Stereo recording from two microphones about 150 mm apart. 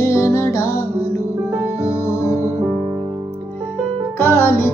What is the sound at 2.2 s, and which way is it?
Music, 20° left (ahead or behind).